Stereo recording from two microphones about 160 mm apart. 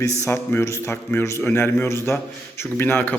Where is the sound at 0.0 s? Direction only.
15° left (ahead or behind).